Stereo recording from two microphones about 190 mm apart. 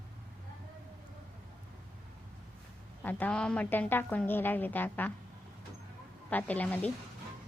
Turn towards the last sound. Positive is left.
turn(degrees=10)  # may be behind; listen again after turning